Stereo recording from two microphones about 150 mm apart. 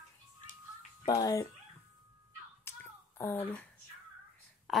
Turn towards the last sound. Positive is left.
turn(degrees=0)  # may be behind; listen again after turning